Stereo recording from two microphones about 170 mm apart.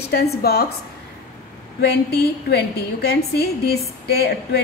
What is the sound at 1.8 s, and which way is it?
A woman's voice, 70° left (ahead or behind).